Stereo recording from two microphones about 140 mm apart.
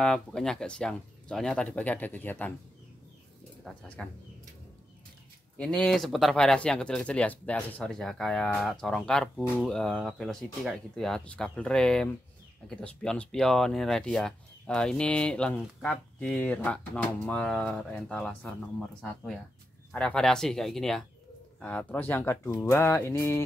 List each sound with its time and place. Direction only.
0.0 s speech: 5° left (ahead or behind)
3.6 s speech: 10° left (ahead or behind)
5.6 s speech: 5° left (ahead or behind)